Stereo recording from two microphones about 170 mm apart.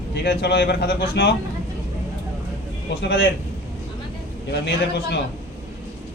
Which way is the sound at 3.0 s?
85° left.